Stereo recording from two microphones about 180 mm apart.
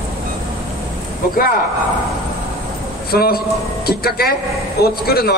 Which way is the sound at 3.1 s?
60° left (ahead or behind).